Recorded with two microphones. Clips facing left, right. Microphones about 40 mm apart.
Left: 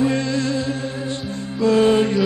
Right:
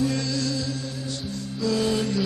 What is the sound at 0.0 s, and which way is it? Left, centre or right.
Music, left.